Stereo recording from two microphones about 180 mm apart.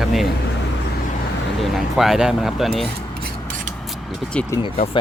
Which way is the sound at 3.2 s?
45° right (ahead or behind).